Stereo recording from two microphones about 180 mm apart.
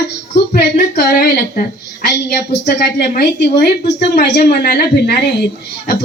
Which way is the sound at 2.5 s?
65° left (ahead or behind).